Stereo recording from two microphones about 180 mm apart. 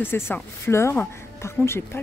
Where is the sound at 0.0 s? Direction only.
10° left (ahead or behind).